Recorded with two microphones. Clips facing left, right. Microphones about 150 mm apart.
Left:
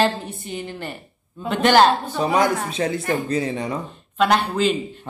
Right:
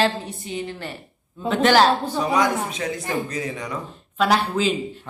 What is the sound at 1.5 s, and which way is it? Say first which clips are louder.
Speech: left 1 dB; centre (ahead or behind).